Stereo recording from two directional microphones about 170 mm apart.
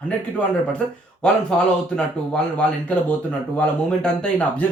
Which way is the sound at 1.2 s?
5° left (ahead or behind).